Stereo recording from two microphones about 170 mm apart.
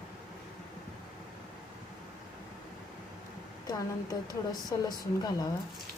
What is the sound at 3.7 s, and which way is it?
Speech, 20° left (ahead or behind).